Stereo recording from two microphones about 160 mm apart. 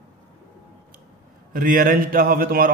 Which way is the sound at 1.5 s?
60° right (ahead or behind).